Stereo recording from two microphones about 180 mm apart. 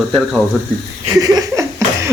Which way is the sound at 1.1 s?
20° right (ahead or behind).